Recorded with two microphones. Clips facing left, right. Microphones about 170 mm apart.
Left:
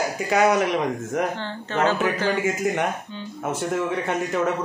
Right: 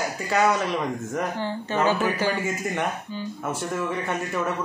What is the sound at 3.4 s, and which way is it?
A man's voice, 20° left (ahead or behind).